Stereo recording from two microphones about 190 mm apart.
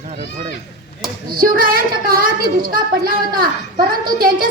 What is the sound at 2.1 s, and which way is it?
A child's voice, 50° right (ahead or behind).